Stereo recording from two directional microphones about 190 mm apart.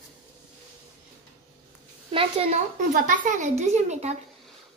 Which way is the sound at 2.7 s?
45° right (ahead or behind).